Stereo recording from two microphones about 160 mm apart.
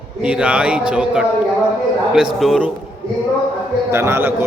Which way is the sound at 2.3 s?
Centre (ahead or behind).